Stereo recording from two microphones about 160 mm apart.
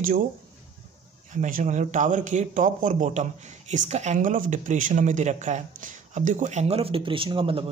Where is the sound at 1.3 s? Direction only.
50° right (ahead or behind).